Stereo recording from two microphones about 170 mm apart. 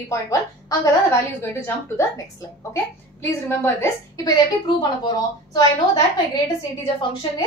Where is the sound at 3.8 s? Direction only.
20° left (ahead or behind).